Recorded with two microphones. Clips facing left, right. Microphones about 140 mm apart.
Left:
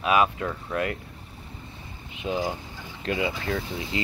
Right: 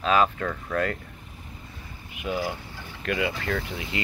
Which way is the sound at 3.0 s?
25° left (ahead or behind).